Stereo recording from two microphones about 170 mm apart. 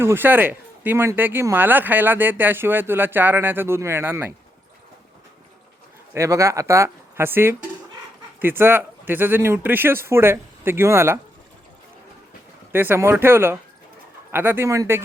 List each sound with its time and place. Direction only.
0.0 s speech: 10° right (ahead or behind)
6.1 s speech: 15° right (ahead or behind)
12.7 s speech: 15° right (ahead or behind)